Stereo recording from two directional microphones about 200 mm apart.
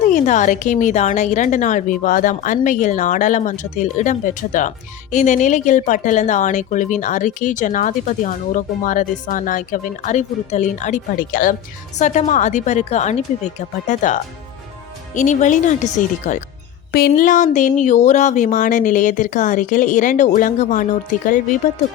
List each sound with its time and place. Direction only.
0.1 s speech: 40° left (ahead or behind)